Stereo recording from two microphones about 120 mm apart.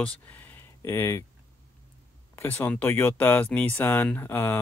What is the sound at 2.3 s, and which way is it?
Speech, 15° left (ahead or behind).